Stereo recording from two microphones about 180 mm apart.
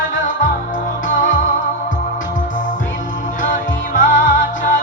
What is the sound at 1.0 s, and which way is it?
Music, 45° left (ahead or behind).